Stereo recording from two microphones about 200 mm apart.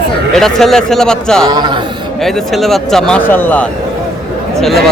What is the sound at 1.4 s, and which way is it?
Speech, 25° right (ahead or behind).